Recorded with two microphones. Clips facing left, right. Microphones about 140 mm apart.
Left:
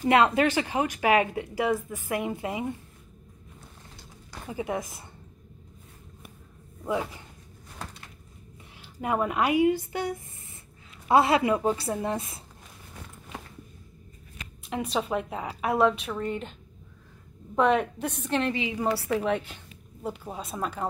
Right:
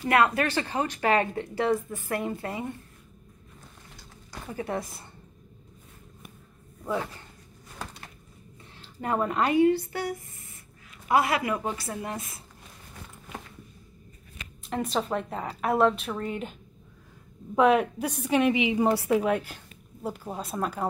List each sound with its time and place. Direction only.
0.0 s speech: 20° left (ahead or behind)
4.3 s speech: 10° left (ahead or behind)
6.9 s speech: 15° left (ahead or behind)
8.7 s speech: 10° left (ahead or behind); by 12.4 s 25° left (ahead or behind)
14.7 s a woman's voice: centre (ahead or behind)
17.6 s a woman's voice: 5° right (ahead or behind)